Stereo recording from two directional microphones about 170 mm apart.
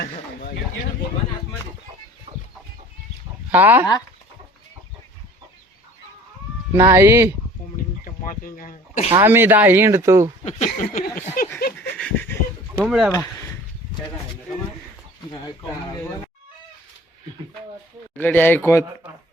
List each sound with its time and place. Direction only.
2.3 s chicken: 45° right (ahead or behind)
3.5 s speech: 10° right (ahead or behind)
6.7 s speech: 15° right (ahead or behind)
8.0 s a sound: 55° left (ahead or behind)
9.1 s speech: 15° right (ahead or behind)
10.8 s a sound: 50° left (ahead or behind)
11.8 s dog: 5° left (ahead or behind)
12.8 s speech: 5° right (ahead or behind)
18.2 s speech: 10° left (ahead or behind)